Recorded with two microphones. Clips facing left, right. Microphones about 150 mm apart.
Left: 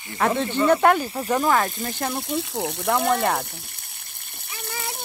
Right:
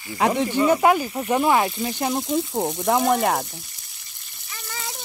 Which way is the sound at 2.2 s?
65° left (ahead or behind).